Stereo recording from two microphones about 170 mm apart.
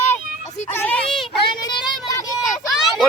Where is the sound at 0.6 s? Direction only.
10° left (ahead or behind).